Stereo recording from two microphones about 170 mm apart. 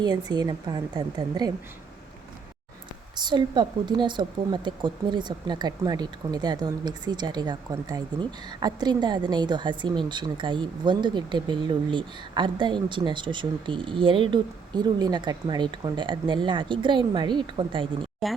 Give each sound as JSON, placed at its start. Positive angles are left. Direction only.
{"t": 0.0, "sound": "speech", "side_deg": -25}
{"t": 3.2, "sound": "speech", "side_deg": -25}
{"t": 18.0, "sound": "speech", "side_deg": 0}